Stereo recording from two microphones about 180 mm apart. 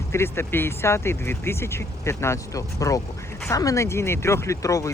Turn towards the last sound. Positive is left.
turn(degrees=15)  # may be behind; listen again after turning